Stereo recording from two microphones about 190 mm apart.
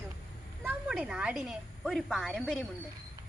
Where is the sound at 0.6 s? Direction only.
5° right (ahead or behind).